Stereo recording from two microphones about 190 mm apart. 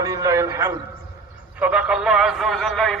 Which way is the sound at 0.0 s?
20° right (ahead or behind).